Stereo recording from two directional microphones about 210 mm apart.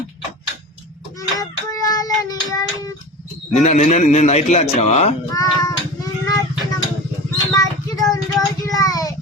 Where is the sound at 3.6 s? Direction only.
35° left (ahead or behind).